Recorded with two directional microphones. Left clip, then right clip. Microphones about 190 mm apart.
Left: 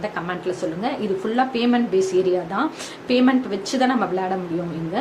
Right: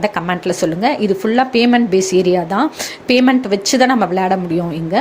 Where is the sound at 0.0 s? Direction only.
40° right (ahead or behind).